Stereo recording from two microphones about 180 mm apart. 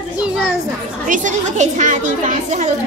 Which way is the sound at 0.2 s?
5° right (ahead or behind).